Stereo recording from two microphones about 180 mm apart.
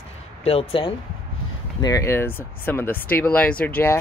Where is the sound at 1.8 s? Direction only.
20° left (ahead or behind).